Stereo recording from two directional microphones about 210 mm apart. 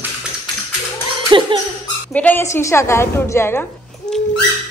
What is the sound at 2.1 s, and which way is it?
A woman's voice, 10° left (ahead or behind).